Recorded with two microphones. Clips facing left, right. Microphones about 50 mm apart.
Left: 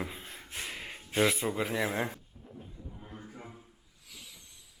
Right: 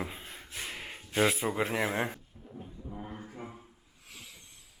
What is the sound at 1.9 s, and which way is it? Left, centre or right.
Speech, right.